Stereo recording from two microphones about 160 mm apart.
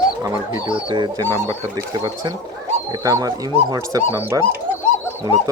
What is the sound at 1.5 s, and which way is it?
Speech, 20° right (ahead or behind).